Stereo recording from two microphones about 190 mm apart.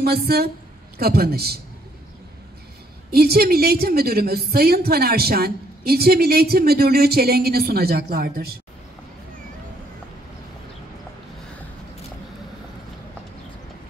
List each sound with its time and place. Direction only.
0.0 s a woman's voice: 55° right (ahead or behind)
3.1 s a woman's voice: 55° right (ahead or behind)